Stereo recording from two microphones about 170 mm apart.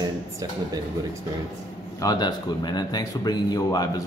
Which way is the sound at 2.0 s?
20° left (ahead or behind).